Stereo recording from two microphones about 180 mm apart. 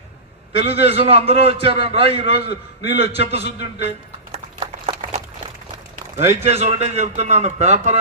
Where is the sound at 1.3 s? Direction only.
70° left (ahead or behind).